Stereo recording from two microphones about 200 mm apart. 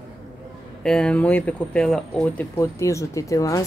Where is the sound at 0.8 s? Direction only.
5° left (ahead or behind).